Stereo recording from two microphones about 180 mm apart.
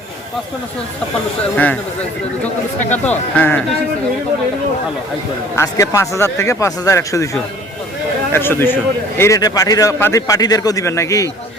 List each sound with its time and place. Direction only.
1.5 s a man's voice: 10° left (ahead or behind)
2.9 s a man's voice: 10° left (ahead or behind)
5.5 s a man's voice: 15° left (ahead or behind)
8.3 s a man's voice: 15° left (ahead or behind)